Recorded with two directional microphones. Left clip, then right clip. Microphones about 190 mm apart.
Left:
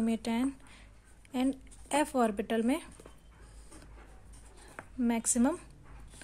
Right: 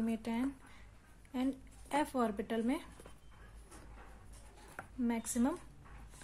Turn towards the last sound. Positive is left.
turn(degrees=35)  # may be behind; listen again after turning